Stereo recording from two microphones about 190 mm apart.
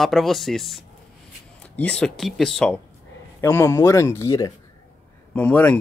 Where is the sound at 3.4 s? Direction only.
15° left (ahead or behind).